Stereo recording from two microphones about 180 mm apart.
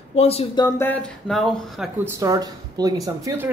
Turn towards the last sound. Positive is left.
turn(degrees=-15)  # may be behind; listen again after turning